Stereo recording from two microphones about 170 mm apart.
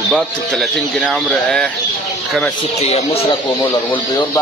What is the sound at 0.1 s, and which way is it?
Speech, centre (ahead or behind).